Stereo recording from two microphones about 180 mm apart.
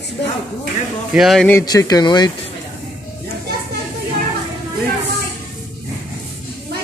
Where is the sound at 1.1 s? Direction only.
Centre (ahead or behind).